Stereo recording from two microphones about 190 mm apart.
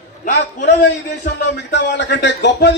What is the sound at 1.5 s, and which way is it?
Speech, 65° left (ahead or behind).